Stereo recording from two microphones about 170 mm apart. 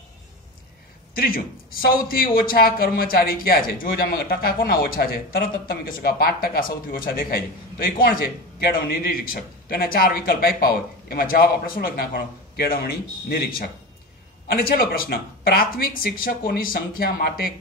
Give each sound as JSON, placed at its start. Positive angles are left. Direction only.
{"t": 1.1, "sound": "a man's voice", "side_deg": 60}